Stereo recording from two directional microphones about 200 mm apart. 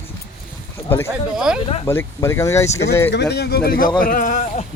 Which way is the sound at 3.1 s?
60° left (ahead or behind).